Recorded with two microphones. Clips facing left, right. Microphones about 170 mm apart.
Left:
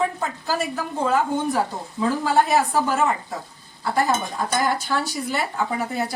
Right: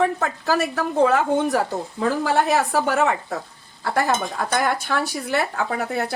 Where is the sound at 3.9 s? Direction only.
65° right (ahead or behind).